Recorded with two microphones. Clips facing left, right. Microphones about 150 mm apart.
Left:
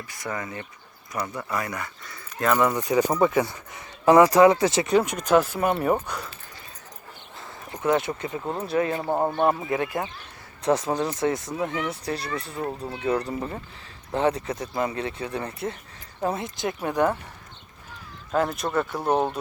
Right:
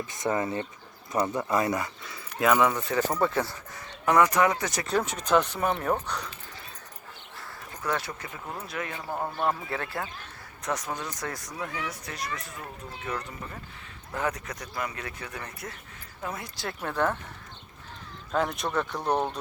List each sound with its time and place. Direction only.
0.1 s speech: 20° right (ahead or behind)
2.0 s speech: 5° right (ahead or behind)
2.7 s speech: 15° left (ahead or behind)
4.0 s speech: 30° left (ahead or behind)
4.9 s speech: 10° left (ahead or behind)
7.3 s speech: 20° left (ahead or behind)
10.6 s speech: 30° left (ahead or behind); by 17.2 s 15° left (ahead or behind)
18.3 s speech: 5° left (ahead or behind)